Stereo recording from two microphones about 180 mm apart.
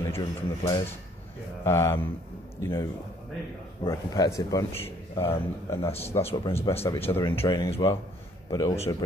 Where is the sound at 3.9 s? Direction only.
20° left (ahead or behind).